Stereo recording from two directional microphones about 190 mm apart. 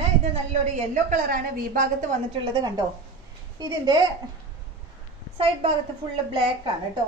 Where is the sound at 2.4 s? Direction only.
25° right (ahead or behind).